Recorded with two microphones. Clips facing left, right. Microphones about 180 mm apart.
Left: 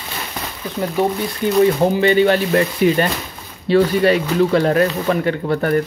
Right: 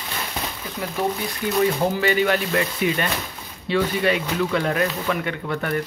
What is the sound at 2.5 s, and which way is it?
Speech, 40° left (ahead or behind).